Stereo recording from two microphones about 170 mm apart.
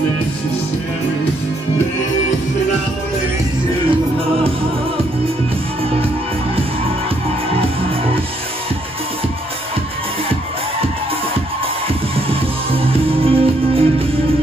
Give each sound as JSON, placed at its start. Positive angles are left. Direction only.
{"t": 12.3, "sound": "music", "side_deg": -35}